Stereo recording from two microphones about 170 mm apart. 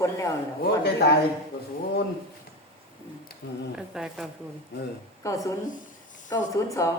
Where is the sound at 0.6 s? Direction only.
70° left (ahead or behind).